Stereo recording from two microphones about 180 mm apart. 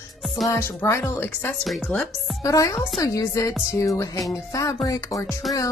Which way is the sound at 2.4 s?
15° left (ahead or behind).